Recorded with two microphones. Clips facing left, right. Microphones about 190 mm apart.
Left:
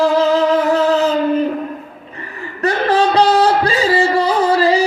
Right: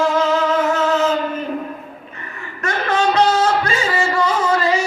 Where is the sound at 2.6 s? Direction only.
35° left (ahead or behind).